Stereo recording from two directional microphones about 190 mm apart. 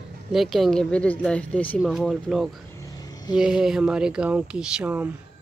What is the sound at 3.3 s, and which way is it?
Speech, centre (ahead or behind).